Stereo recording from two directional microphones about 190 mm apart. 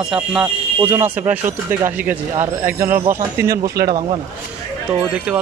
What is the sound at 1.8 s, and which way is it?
Speech, 10° right (ahead or behind).